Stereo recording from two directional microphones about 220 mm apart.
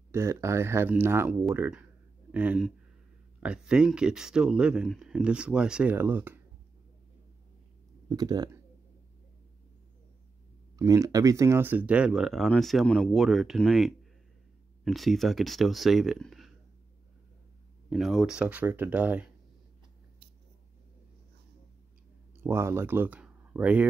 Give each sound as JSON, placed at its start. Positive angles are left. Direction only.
{"t": 0.1, "sound": "speech", "side_deg": -10}
{"t": 8.1, "sound": "speech", "side_deg": -15}
{"t": 10.8, "sound": "speech", "side_deg": -15}
{"t": 17.8, "sound": "speech", "side_deg": 0}
{"t": 22.4, "sound": "speech", "side_deg": -10}